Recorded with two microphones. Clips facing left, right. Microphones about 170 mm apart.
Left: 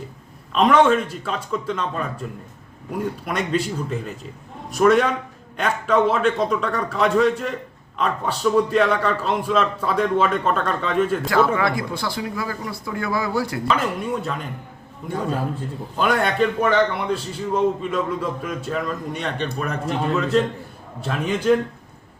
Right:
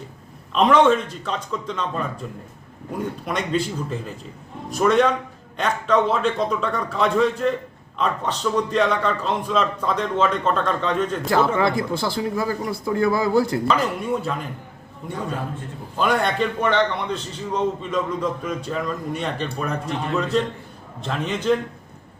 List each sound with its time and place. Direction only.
0.5 s a man's voice: centre (ahead or behind)
3.2 s a man's voice: centre (ahead or behind)
11.3 s speech: 25° right (ahead or behind)
13.7 s a man's voice: centre (ahead or behind)
16.0 s a man's voice: centre (ahead or behind)